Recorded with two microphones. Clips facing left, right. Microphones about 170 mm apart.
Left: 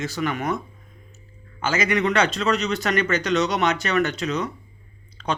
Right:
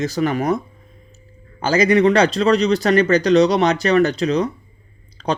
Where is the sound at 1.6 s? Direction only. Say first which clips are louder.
Right 8 dB; 35° right (ahead or behind).